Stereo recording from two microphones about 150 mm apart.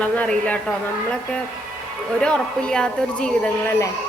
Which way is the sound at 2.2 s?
5° left (ahead or behind).